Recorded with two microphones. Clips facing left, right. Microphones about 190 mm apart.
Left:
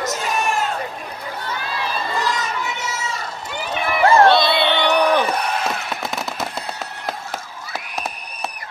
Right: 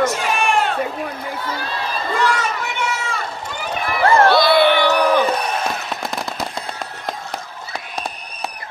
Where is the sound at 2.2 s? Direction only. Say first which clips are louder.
Right 3 dB; 65° right (ahead or behind).